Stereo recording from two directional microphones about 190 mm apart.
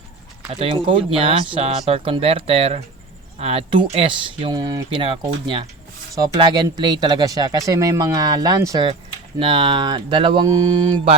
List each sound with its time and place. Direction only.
0.5 s speech: 30° right (ahead or behind)